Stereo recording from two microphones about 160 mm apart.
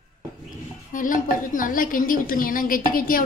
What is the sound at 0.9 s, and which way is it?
A woman's voice, 55° left (ahead or behind).